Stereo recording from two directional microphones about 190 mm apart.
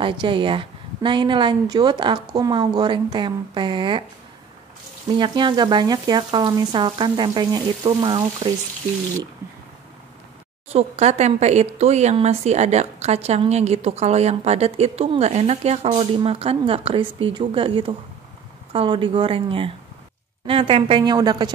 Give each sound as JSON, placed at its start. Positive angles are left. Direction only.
{"t": 0.0, "sound": "frying", "side_deg": -25}
{"t": 5.1, "sound": "frying", "side_deg": -25}
{"t": 10.7, "sound": "speech", "side_deg": -35}
{"t": 18.7, "sound": "frying", "side_deg": -30}